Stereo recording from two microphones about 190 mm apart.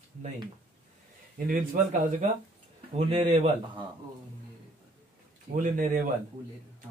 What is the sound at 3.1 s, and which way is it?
Speech, 35° right (ahead or behind).